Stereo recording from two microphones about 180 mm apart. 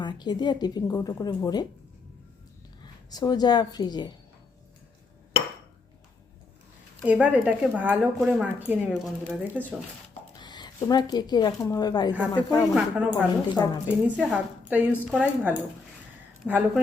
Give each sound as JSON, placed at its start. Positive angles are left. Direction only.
{"t": 0.0, "sound": "a woman's voice", "side_deg": 25}
{"t": 3.1, "sound": "a woman's voice", "side_deg": 20}
{"t": 7.0, "sound": "speech", "side_deg": -5}
{"t": 10.3, "sound": "a woman's voice", "side_deg": 25}
{"t": 12.7, "sound": "speech", "side_deg": -5}